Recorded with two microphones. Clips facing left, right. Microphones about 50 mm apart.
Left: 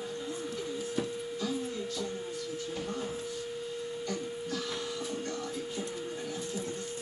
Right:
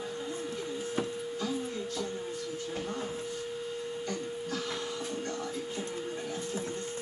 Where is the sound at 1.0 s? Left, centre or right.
Right.